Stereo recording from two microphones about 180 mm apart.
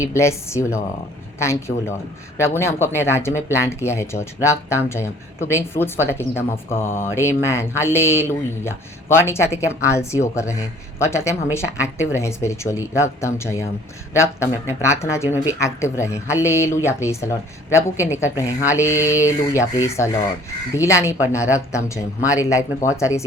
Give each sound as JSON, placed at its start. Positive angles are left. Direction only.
{"t": 0.0, "sound": "speech", "side_deg": 15}